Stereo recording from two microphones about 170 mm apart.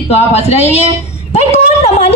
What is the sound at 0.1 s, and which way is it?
A woman's voice, 40° left (ahead or behind).